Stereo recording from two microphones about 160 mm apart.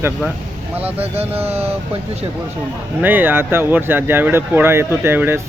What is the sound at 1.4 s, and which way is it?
Speech, 40° right (ahead or behind).